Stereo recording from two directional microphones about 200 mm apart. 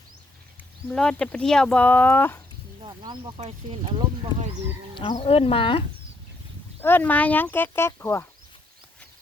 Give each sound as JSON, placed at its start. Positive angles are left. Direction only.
{"t": 0.9, "sound": "speech", "side_deg": 5}
{"t": 2.8, "sound": "speech", "side_deg": -20}
{"t": 5.1, "sound": "speech", "side_deg": 30}
{"t": 6.8, "sound": "speech", "side_deg": 10}